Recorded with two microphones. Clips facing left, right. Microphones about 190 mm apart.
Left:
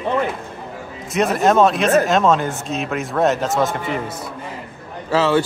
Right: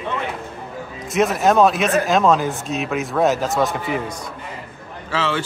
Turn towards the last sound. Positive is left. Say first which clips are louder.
# left 6 dB
turn(degrees=40)  # may be behind; listen again after turning